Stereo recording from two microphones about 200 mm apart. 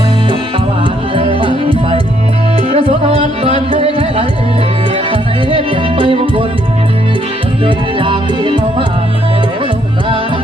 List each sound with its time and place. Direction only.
1.1 s music: 25° right (ahead or behind)
7.6 s music: 25° right (ahead or behind)